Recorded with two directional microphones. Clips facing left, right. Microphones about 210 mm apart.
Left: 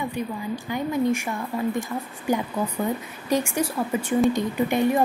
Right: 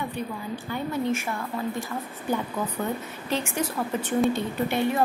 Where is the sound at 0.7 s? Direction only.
15° left (ahead or behind).